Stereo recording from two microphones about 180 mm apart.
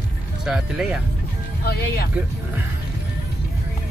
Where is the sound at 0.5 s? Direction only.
5° right (ahead or behind).